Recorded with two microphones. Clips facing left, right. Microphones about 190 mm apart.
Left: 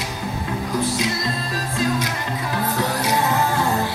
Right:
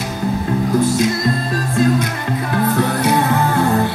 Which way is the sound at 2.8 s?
55° right (ahead or behind).